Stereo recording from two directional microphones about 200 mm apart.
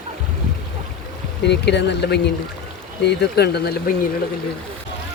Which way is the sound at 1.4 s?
60° left (ahead or behind).